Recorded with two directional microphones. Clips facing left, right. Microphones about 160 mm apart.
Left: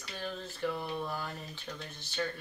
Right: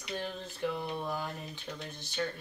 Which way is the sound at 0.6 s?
15° right (ahead or behind).